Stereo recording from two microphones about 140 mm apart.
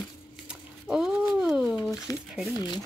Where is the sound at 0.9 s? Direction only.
5° right (ahead or behind).